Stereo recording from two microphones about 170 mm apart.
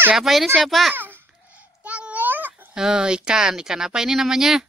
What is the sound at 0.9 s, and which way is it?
Babbling, 10° right (ahead or behind).